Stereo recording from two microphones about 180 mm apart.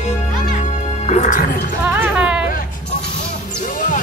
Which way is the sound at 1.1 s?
40° left (ahead or behind).